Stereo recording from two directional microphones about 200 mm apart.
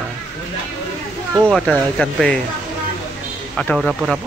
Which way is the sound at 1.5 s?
5° left (ahead or behind).